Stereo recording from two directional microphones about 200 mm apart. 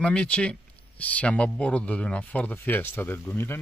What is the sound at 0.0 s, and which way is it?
Speech, 5° left (ahead or behind).